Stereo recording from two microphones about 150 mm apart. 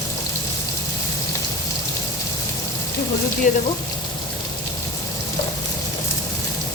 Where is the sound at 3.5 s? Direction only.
60° left (ahead or behind).